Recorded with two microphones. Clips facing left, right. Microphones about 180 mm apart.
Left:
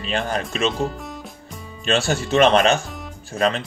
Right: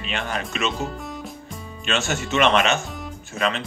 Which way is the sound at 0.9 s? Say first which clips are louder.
Right 1 dB; centre (ahead or behind).